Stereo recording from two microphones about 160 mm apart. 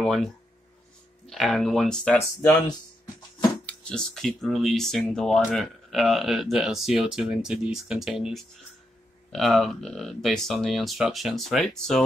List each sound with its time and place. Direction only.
0.0 s speech: centre (ahead or behind)
2.7 s a sound: 25° left (ahead or behind)
3.6 s speech: 5° left (ahead or behind)